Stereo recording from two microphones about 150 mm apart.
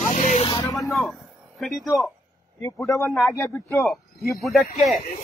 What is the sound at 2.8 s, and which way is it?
Speech, 20° left (ahead or behind).